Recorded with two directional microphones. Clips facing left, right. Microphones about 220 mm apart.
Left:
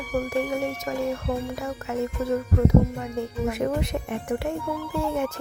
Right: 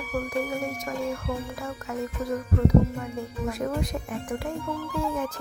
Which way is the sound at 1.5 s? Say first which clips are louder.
Left 4 dB; 25° left (ahead or behind).